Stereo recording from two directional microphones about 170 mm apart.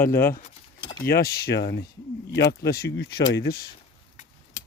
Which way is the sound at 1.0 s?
65° left (ahead or behind).